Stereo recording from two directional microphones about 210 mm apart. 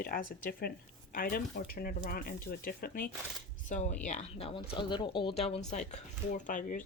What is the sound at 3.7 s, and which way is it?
Speech, 35° left (ahead or behind).